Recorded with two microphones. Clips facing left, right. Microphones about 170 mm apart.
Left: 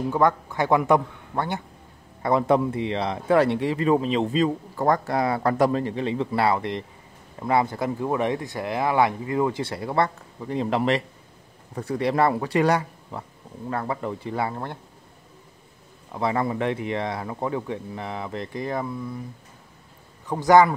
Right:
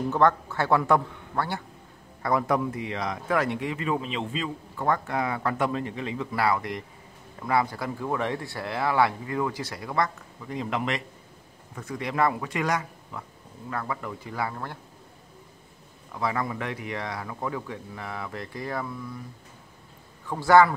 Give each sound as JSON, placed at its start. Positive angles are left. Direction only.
{"t": 0.1, "sound": "a man's voice", "side_deg": 10}
{"t": 16.1, "sound": "speech", "side_deg": 25}
{"t": 20.2, "sound": "a man's voice", "side_deg": 20}